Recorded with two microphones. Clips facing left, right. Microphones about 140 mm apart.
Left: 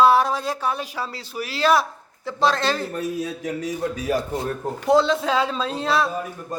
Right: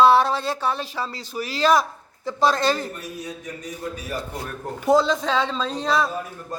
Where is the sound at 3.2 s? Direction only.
90° left.